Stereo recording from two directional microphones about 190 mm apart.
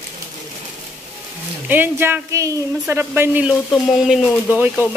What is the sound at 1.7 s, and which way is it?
Speech, 10° right (ahead or behind).